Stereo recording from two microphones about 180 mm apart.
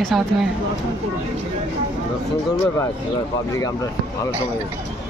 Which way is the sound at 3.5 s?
20° left (ahead or behind).